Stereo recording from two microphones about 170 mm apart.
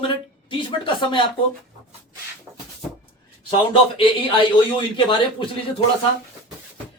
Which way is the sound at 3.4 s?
30° left (ahead or behind).